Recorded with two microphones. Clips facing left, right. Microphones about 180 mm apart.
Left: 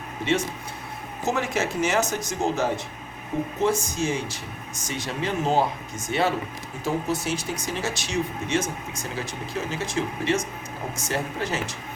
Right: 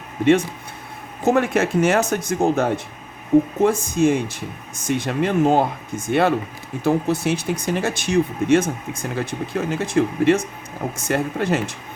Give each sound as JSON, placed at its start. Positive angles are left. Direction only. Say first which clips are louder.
{"t": 1.2, "sound": "speech", "louder": "right 8 dB", "side_deg": -55}